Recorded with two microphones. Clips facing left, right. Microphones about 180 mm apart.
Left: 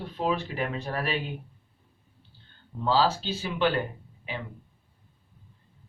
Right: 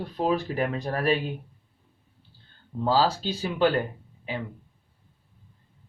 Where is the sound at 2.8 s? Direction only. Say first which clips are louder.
Right 1 dB; 40° right (ahead or behind).